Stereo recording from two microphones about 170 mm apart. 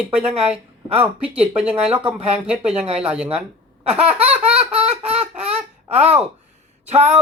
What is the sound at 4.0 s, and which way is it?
Speech, 35° right (ahead or behind).